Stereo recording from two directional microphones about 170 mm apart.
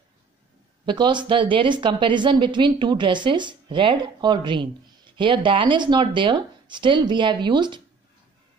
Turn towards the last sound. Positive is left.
turn(degrees=-25)  # may be behind; listen again after turning